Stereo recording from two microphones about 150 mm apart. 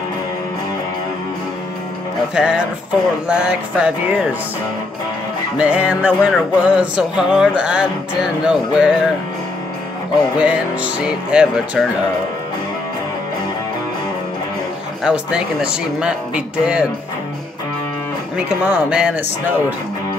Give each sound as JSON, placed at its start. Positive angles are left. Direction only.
{"t": 2.3, "sound": "speech", "side_deg": -5}
{"t": 3.3, "sound": "music", "side_deg": -5}
{"t": 5.6, "sound": "music", "side_deg": -5}
{"t": 10.4, "sound": "music", "side_deg": -5}
{"t": 15.0, "sound": "music", "side_deg": -5}
{"t": 18.6, "sound": "music", "side_deg": -10}